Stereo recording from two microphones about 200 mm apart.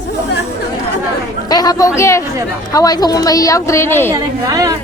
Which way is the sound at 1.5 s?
20° left (ahead or behind).